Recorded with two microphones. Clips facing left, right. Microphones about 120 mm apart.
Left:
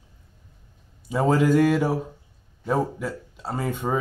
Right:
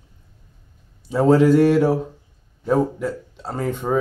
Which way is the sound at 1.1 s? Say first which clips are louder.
Right 5 dB; 5° left (ahead or behind).